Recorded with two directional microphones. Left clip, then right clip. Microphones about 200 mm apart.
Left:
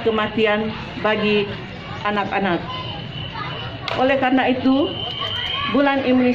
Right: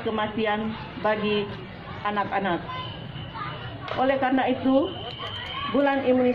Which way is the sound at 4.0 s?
5° right (ahead or behind).